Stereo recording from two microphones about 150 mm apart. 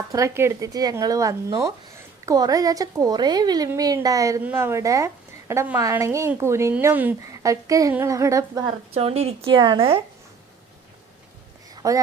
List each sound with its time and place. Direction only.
0.1 s a woman's voice: 20° right (ahead or behind)
8.6 s a woman's voice: 40° right (ahead or behind)
11.7 s a sound: 25° right (ahead or behind)